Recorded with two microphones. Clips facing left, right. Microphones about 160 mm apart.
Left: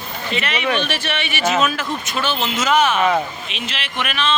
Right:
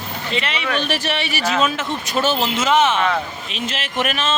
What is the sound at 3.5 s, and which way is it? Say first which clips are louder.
Speech: right 4 dB; 45° right (ahead or behind).